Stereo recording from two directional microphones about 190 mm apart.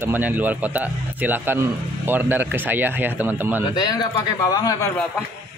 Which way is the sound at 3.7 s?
20° left (ahead or behind).